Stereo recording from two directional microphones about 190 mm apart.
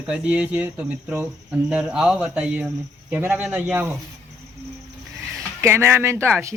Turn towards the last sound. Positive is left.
turn(degrees=-15)  # may be behind; listen again after turning